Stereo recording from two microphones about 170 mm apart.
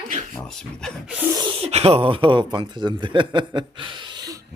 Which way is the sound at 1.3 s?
25° right (ahead or behind).